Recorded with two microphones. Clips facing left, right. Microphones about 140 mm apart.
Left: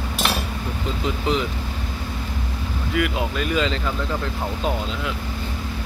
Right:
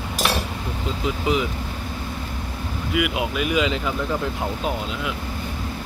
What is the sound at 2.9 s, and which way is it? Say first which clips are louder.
Speech: even; 10° right (ahead or behind).